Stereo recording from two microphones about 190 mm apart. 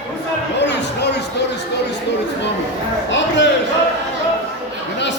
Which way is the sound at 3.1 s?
75° left (ahead or behind).